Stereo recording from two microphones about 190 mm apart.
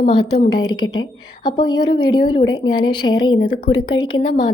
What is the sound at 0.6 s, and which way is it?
A woman's voice, 20° left (ahead or behind).